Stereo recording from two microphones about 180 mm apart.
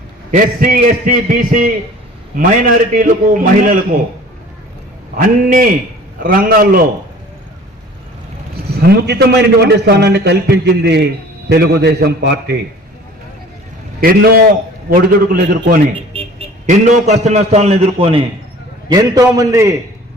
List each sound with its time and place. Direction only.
0.3 s a man's voice: 50° right (ahead or behind)
5.1 s a man's voice: 50° right (ahead or behind)
8.9 s a man's voice: 65° right (ahead or behind)
14.0 s a man's voice: 55° right (ahead or behind)
16.6 s a man's voice: 40° right (ahead or behind)
18.9 s a man's voice: 20° right (ahead or behind)